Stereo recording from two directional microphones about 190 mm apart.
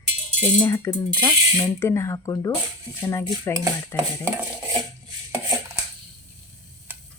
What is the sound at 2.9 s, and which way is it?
Speech, 10° right (ahead or behind).